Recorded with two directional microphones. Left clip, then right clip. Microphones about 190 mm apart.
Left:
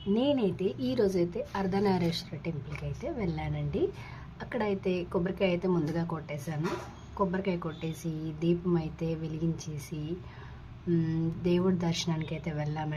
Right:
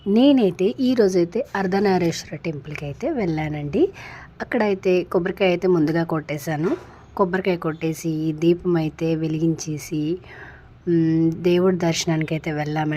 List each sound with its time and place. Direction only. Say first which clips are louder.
0.1 s a woman's voice: right 11 dB; 45° right (ahead or behind)